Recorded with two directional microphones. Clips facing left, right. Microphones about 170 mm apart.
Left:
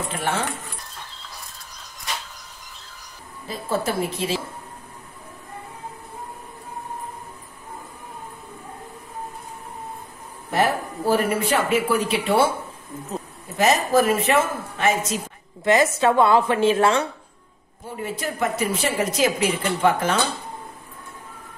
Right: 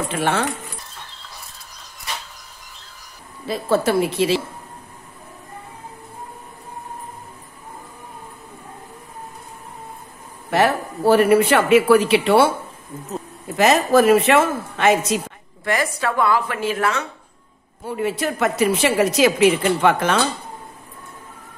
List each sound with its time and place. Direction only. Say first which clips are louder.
3.4 s a woman's voice: right 6 dB; 85° right
10.5 s speech: right 3 dB; 80° right
13.6 s a woman's voice: right 4 dB; 80° right
15.6 s a woman's voice: left 4 dB; 25° left (ahead or behind)
17.8 s a woman's voice: right 6 dB; 75° right (ahead or behind)